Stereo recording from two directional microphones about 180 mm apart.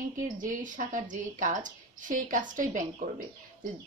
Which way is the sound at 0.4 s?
45° right (ahead or behind).